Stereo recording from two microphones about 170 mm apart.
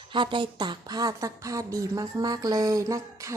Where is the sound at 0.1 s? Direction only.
30° right (ahead or behind).